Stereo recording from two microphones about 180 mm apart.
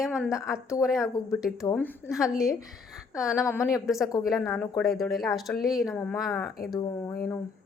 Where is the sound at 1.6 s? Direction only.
10° left (ahead or behind).